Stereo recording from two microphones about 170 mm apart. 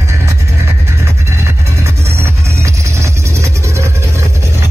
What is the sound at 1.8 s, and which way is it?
Music, 15° right (ahead or behind).